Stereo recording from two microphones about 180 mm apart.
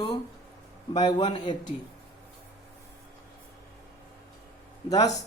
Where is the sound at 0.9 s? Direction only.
25° left (ahead or behind).